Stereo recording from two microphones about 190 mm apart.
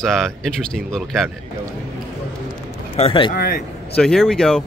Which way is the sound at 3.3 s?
50° left (ahead or behind).